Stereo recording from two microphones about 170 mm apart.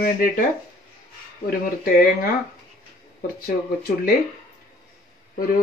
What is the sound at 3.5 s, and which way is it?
Speech, 60° left (ahead or behind).